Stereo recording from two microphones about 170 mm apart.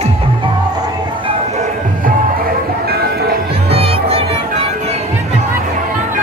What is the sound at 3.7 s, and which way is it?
Music, 35° right (ahead or behind).